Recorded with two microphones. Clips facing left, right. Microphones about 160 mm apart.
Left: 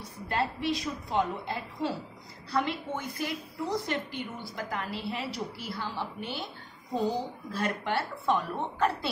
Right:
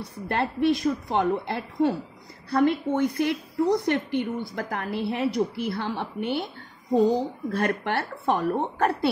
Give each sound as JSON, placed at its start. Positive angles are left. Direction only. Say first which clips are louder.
{"t": 0.3, "sound": "a woman's voice", "louder": "right 7 dB", "side_deg": -55}
{"t": 7.5, "sound": "a woman's voice", "louder": "right 4 dB", "side_deg": -60}